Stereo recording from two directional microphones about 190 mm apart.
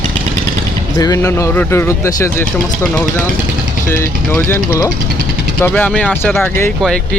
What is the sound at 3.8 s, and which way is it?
Speech, 15° left (ahead or behind).